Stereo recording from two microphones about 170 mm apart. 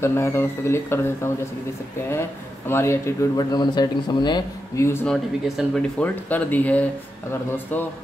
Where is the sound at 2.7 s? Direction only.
15° left (ahead or behind).